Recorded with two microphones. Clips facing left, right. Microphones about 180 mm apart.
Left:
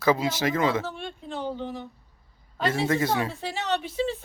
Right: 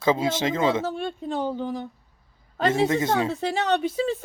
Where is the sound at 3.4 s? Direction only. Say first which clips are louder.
Right 5 dB; 45° right (ahead or behind).